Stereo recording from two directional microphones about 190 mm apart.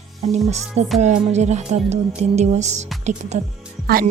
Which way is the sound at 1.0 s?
35° right (ahead or behind).